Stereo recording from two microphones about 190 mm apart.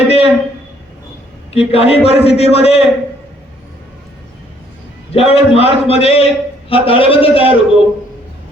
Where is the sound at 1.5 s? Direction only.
30° left (ahead or behind).